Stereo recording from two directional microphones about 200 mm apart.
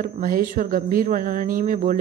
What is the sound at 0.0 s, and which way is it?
A woman's voice, 45° right (ahead or behind).